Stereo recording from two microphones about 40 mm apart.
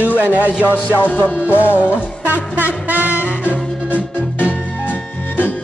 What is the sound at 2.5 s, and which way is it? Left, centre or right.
Music, right.